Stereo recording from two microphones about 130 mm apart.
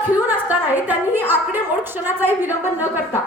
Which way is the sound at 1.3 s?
15° right (ahead or behind).